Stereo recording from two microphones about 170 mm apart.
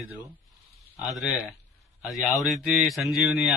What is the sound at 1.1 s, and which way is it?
Speech, centre (ahead or behind).